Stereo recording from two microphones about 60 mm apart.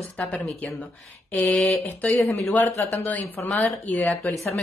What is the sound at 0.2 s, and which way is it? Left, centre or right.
Speech, left.